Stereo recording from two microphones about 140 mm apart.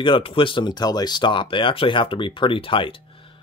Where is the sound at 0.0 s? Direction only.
40° left (ahead or behind).